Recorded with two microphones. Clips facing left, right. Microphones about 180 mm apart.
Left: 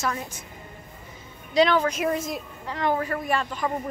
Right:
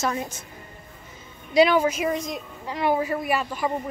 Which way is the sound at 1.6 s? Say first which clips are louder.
Right 2 dB; 10° right (ahead or behind).